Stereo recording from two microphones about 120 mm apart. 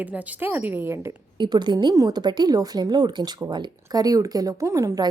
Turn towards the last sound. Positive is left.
turn(degrees=-30)  # may be behind; listen again after turning